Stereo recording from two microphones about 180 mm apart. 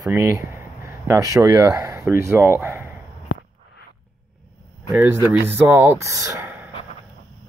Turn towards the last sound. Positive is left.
turn(degrees=-10)  # may be behind; listen again after turning